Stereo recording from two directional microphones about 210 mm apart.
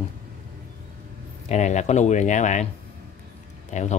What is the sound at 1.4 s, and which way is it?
A man's voice, 35° left (ahead or behind).